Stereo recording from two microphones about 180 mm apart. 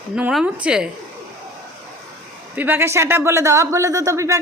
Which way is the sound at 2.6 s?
10° right (ahead or behind).